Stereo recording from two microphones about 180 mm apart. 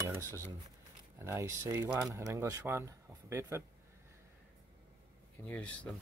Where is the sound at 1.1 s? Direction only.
15° right (ahead or behind).